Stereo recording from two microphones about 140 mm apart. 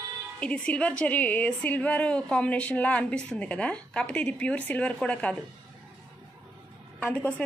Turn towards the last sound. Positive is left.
turn(degrees=10)  # may be behind; listen again after turning